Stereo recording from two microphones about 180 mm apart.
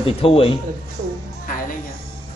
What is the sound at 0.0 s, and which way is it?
Speech, 30° left (ahead or behind).